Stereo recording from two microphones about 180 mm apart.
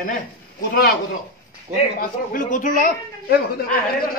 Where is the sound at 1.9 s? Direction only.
45° left (ahead or behind).